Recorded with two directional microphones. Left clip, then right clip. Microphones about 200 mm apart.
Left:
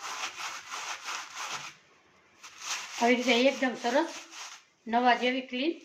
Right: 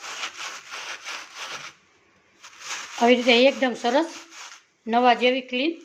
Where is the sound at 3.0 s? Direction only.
45° right (ahead or behind).